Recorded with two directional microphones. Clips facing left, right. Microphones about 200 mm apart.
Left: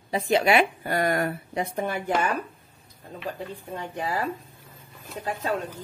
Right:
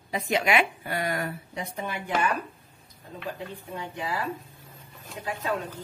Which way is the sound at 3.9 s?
40° left (ahead or behind).